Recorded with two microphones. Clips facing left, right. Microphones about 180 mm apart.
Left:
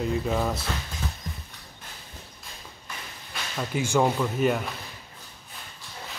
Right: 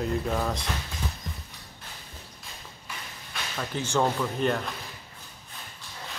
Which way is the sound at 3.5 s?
10° left (ahead or behind).